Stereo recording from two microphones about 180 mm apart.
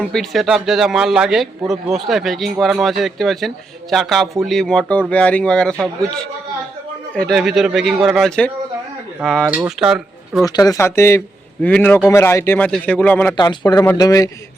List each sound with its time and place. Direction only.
0.0 s a man's voice: centre (ahead or behind)
9.5 s speech: 5° right (ahead or behind)
10.4 s a man's voice: 20° left (ahead or behind)
13.3 s speech: 25° left (ahead or behind)